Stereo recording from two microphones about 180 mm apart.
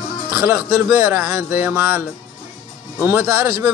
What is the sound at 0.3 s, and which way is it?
A man's voice, 10° right (ahead or behind).